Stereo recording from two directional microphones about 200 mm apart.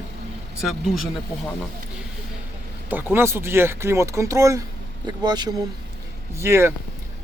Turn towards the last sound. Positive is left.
turn(degrees=-15)  # may be behind; listen again after turning